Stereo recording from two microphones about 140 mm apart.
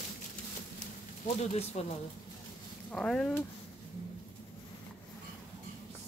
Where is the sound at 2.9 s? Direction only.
5° left (ahead or behind).